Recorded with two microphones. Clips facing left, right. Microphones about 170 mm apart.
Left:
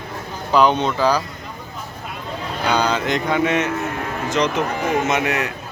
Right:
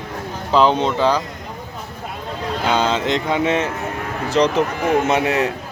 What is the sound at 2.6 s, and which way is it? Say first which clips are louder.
A man's voice: right 1 dB; 25° right (ahead or behind).